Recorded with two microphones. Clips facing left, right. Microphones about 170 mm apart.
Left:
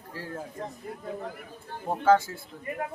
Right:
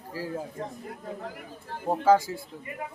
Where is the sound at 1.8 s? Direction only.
10° right (ahead or behind).